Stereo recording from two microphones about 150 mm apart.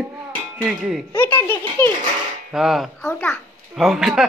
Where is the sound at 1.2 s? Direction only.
15° left (ahead or behind).